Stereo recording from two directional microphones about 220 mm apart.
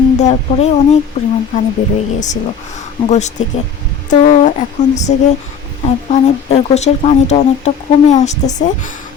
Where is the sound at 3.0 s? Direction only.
30° left (ahead or behind).